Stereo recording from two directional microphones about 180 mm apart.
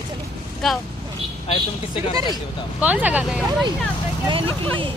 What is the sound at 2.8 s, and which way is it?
Speech, 10° right (ahead or behind).